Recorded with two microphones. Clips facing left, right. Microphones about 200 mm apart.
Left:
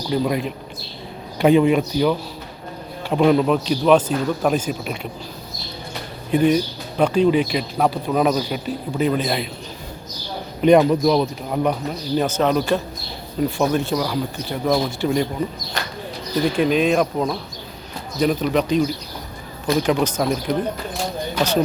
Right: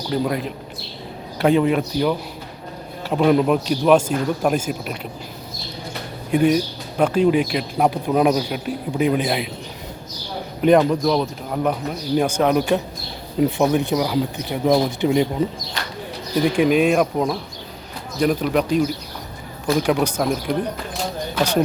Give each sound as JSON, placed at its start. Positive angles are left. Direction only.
{"t": 0.1, "sound": "speech", "side_deg": 5}
{"t": 6.3, "sound": "speech", "side_deg": -5}
{"t": 10.6, "sound": "speech", "side_deg": 0}
{"t": 12.1, "sound": "speech", "side_deg": -10}
{"t": 15.8, "sound": "a sound", "side_deg": 45}
{"t": 16.5, "sound": "speech", "side_deg": -15}
{"t": 21.3, "sound": "speech", "side_deg": -10}